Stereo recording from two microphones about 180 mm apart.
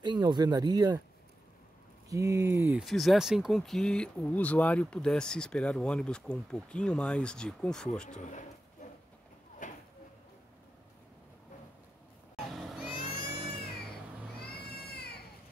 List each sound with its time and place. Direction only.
0.0 s speech: 25° right (ahead or behind)
2.0 s speech: 15° right (ahead or behind)
2.8 s speech: centre (ahead or behind)
8.1 s speech: 45° left (ahead or behind)
8.8 s train: 45° left (ahead or behind)
9.6 s a sound: 45° left (ahead or behind)
12.4 s a sound: centre (ahead or behind)
14.7 s baby cry: 60° left (ahead or behind)